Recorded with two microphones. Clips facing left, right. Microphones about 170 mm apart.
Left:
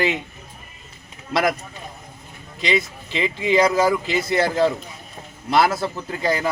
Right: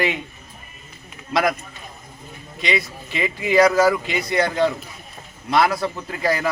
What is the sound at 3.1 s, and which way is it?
Speech, 30° left (ahead or behind).